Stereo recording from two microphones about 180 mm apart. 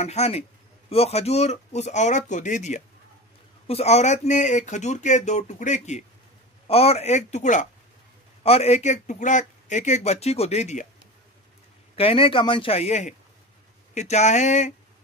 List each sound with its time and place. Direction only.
0.0 s speech: 35° left (ahead or behind)
11.9 s speech: 30° left (ahead or behind)